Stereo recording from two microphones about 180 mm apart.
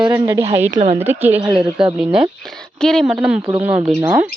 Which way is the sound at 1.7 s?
25° right (ahead or behind).